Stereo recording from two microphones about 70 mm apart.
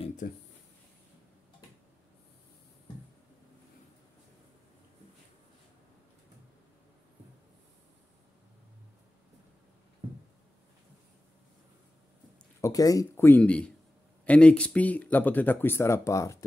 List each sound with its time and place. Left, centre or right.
12.6 s speech: left
13.1 s speech: left
13.4 s a man's voice: centre; by 16.4 s left